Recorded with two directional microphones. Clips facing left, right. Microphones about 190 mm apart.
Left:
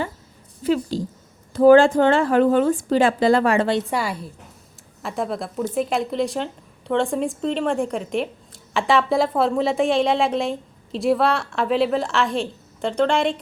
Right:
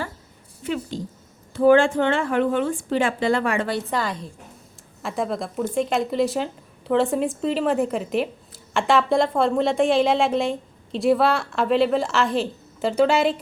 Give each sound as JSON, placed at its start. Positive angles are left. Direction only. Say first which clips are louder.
{"t": 0.6, "sound": "a sound", "louder": "left 6 dB", "side_deg": 35}
{"t": 1.5, "sound": "a woman's voice", "louder": "left 4 dB", "side_deg": 40}
{"t": 3.8, "sound": "a woman's voice", "louder": "left 2 dB", "side_deg": 10}